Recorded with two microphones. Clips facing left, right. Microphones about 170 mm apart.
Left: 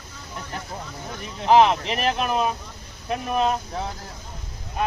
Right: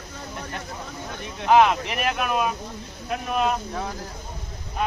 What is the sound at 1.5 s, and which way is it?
Speech, 30° left (ahead or behind).